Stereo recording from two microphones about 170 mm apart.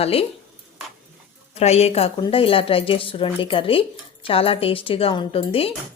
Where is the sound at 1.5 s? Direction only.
40° left (ahead or behind).